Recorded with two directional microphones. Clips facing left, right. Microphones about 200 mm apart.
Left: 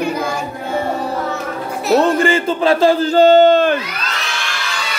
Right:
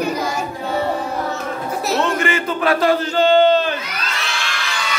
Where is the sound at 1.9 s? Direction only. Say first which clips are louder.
Left 7 dB; 35° left (ahead or behind); by 3.8 s 50° left (ahead or behind).